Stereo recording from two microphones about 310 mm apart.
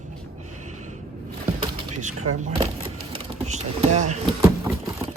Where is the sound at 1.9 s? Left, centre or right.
Right.